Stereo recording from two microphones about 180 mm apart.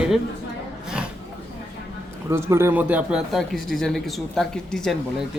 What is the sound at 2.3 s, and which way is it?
Speech, 15° right (ahead or behind).